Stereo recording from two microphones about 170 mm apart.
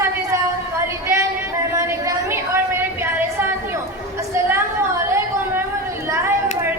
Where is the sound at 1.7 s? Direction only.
15° right (ahead or behind).